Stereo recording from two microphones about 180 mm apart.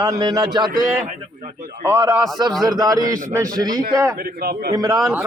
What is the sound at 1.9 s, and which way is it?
A man's voice, 15° right (ahead or behind).